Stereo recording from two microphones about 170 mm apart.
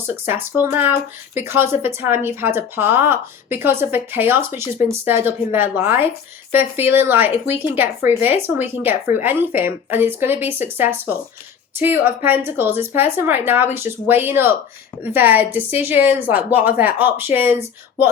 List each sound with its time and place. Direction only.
0.3 s speech: 10° right (ahead or behind)